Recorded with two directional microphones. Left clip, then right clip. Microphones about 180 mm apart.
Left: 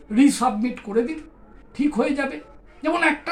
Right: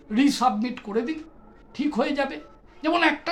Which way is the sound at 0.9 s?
30° right (ahead or behind).